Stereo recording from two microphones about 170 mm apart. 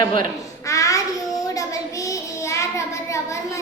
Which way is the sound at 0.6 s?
20° left (ahead or behind).